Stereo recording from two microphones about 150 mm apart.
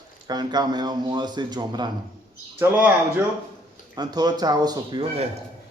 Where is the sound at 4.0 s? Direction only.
25° right (ahead or behind).